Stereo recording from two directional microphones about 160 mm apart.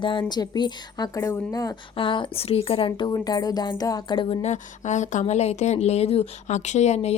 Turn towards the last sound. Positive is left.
turn(degrees=45)  # may be behind; listen again after turning